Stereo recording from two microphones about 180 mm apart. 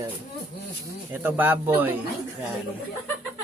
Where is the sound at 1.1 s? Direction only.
10° right (ahead or behind).